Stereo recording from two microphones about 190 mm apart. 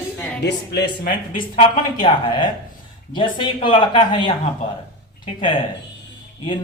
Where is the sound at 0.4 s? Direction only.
60° left (ahead or behind).